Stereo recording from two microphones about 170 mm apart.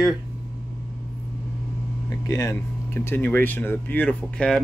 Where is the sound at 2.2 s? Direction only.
20° left (ahead or behind).